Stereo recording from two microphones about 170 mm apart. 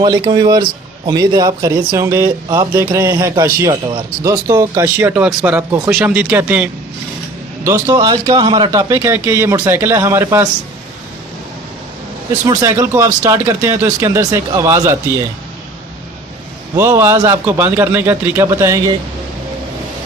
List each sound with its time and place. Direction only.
0.0 s a man's voice: 25° right (ahead or behind)
4.9 s a man's voice: 10° right (ahead or behind)
12.5 s a man's voice: 20° right (ahead or behind)
16.7 s a man's voice: 15° right (ahead or behind)